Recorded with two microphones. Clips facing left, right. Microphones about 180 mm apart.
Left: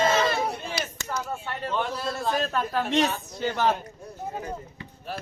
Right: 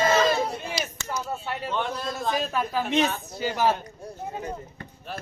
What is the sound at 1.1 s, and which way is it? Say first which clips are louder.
Speech: right 1 dB; 10° right (ahead or behind).